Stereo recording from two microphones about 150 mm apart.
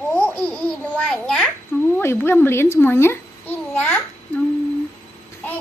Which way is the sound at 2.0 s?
15° left (ahead or behind).